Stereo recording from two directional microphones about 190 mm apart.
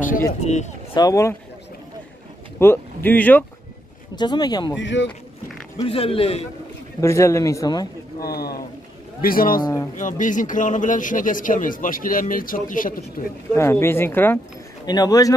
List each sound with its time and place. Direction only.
0.1 s a man's voice: 40° left (ahead or behind)
0.9 s a man's voice: 15° left (ahead or behind)
2.6 s a man's voice: 10° left (ahead or behind)
4.1 s speech: 20° left (ahead or behind)
4.7 s speech: 70° left (ahead or behind)
5.9 s speech: 30° left (ahead or behind)
7.0 s a man's voice: 15° left (ahead or behind)
8.2 s a man's voice: 55° left (ahead or behind)
9.6 s a man's voice: 15° left (ahead or behind)
9.9 s a man's voice: 45° left (ahead or behind)
13.5 s a man's voice: 15° left (ahead or behind)